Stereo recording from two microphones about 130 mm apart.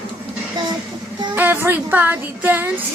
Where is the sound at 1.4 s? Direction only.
15° right (ahead or behind).